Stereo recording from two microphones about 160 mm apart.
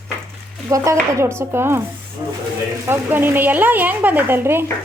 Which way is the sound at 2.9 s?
10° right (ahead or behind).